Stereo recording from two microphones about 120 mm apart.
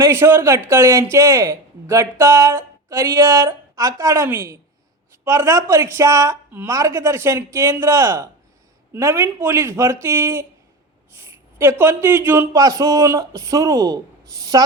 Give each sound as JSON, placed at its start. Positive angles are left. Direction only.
{"t": 0.0, "sound": "speech", "side_deg": -20}